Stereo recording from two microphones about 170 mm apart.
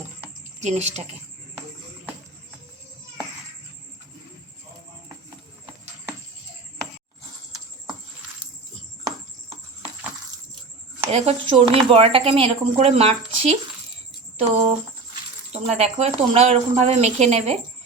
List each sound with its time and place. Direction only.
0.6 s speech: 40° right (ahead or behind)
11.1 s speech: 35° right (ahead or behind)